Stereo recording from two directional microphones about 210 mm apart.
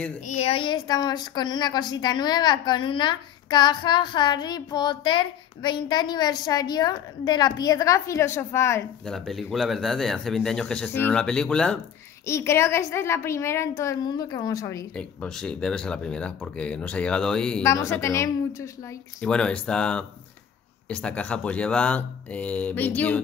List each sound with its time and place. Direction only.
0.2 s a woman's voice: 30° left (ahead or behind); by 8.8 s 15° left (ahead or behind)
9.0 s speech: centre (ahead or behind); by 14.9 s 15° left (ahead or behind)
15.0 s speech: 5° left (ahead or behind)